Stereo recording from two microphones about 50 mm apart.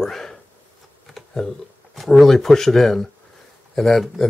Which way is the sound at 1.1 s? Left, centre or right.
Centre.